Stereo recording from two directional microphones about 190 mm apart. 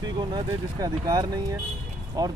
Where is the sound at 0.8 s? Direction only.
20° right (ahead or behind).